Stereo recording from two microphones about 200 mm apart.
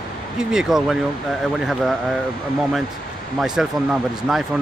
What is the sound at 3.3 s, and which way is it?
Speech, 5° right (ahead or behind).